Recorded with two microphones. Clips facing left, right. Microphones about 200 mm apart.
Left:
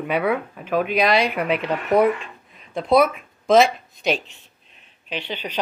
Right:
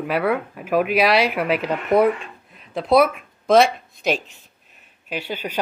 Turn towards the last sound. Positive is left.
turn(degrees=-10)  # may be behind; listen again after turning